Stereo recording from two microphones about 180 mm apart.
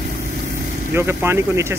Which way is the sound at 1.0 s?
15° right (ahead or behind).